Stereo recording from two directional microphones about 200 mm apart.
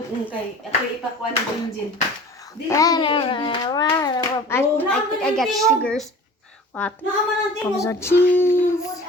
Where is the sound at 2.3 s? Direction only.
15° left (ahead or behind).